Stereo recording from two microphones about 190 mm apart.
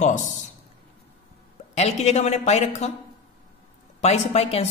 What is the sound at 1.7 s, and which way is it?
Speech, 35° left (ahead or behind).